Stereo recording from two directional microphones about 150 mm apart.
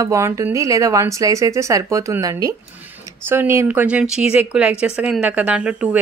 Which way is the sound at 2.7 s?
10° right (ahead or behind).